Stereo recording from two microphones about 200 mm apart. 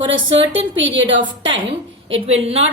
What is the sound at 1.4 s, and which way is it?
A woman's voice, 25° right (ahead or behind).